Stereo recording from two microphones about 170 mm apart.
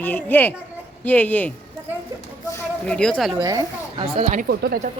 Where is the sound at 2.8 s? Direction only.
5° left (ahead or behind).